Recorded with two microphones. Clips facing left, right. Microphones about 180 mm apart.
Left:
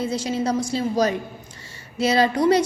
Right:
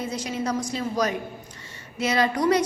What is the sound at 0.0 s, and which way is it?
A woman's voice, 30° left (ahead or behind).